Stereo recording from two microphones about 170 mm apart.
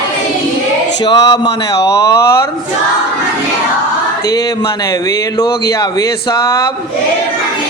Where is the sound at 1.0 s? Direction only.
25° left (ahead or behind).